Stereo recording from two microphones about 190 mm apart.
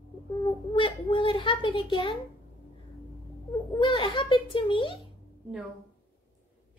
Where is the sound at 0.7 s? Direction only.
25° left (ahead or behind).